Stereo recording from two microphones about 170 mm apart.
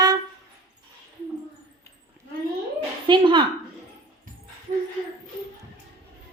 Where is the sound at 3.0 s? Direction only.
30° right (ahead or behind).